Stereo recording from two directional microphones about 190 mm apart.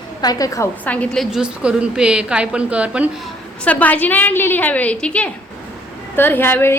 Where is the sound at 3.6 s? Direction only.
10° left (ahead or behind).